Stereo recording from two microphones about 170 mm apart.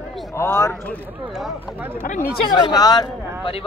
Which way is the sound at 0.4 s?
15° left (ahead or behind).